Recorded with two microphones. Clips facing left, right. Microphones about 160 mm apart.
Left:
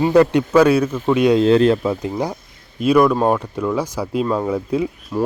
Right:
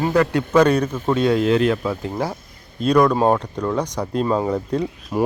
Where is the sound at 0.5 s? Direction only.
5° left (ahead or behind).